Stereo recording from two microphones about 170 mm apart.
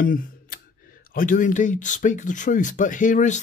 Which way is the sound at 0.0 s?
55° left (ahead or behind).